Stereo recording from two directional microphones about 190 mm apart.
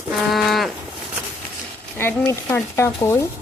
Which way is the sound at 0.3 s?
Centre (ahead or behind).